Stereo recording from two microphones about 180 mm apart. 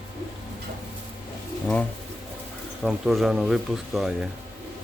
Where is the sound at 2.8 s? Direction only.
Centre (ahead or behind).